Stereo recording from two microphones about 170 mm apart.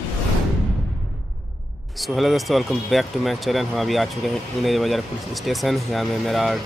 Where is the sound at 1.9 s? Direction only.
Centre (ahead or behind).